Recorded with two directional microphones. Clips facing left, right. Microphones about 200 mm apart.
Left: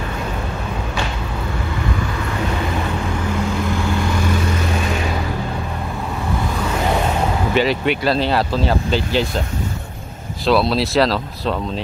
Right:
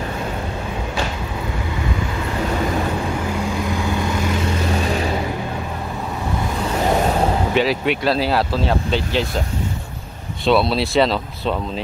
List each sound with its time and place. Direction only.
3.6 s vehicle: 15° right (ahead or behind)
7.5 s speech: centre (ahead or behind)
10.4 s speech: centre (ahead or behind)